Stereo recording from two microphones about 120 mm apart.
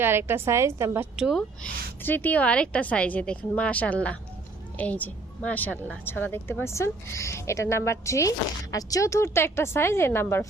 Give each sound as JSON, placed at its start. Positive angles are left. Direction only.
{"t": 0.0, "sound": "a woman's voice", "side_deg": -20}
{"t": 1.1, "sound": "speech", "side_deg": -5}
{"t": 1.6, "sound": "a woman's voice", "side_deg": 15}